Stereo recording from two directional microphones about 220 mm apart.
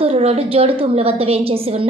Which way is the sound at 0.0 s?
30° right (ahead or behind).